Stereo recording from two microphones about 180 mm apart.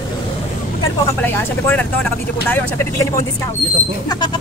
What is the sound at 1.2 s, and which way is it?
Speech, 10° left (ahead or behind).